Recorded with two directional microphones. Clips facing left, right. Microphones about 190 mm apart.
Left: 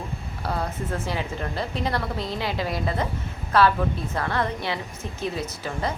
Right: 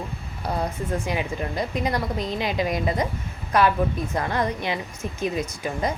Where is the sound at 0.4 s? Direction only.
15° right (ahead or behind).